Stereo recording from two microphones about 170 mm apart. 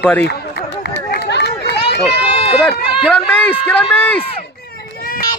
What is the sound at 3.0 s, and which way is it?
Speech, 10° left (ahead or behind).